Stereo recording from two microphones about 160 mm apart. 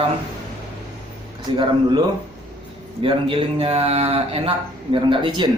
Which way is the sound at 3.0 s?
35° right (ahead or behind).